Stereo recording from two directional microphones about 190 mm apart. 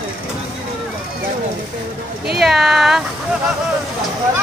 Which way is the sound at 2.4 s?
Centre (ahead or behind).